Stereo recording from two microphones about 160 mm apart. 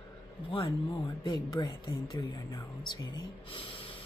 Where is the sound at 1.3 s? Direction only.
25° left (ahead or behind).